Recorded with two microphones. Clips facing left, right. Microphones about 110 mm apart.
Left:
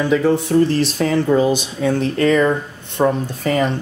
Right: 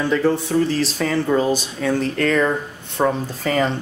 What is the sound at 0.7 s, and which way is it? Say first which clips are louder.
Speech: left 3 dB; 60° left (ahead or behind).